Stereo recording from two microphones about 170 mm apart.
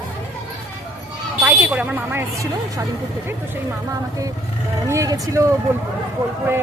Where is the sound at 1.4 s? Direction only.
10° right (ahead or behind).